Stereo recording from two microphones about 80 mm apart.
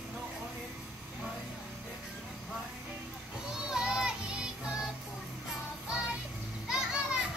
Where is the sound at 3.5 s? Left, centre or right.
Centre.